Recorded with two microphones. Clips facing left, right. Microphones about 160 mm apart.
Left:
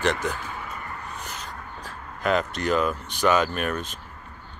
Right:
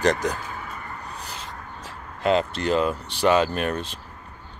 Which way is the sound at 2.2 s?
25° right (ahead or behind).